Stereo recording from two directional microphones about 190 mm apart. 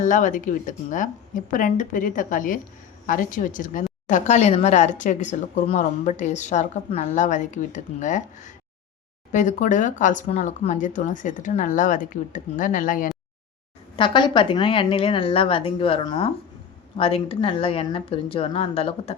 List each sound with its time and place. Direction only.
0.0 s a woman's voice: 40° left (ahead or behind)
13.9 s a woman's voice: 25° left (ahead or behind)